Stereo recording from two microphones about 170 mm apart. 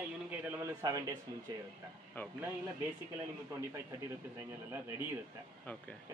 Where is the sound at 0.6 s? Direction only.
20° right (ahead or behind).